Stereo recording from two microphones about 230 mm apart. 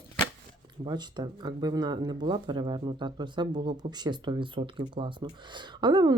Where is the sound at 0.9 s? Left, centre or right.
Centre.